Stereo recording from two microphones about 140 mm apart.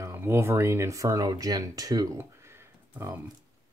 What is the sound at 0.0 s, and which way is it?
Speech, 15° right (ahead or behind).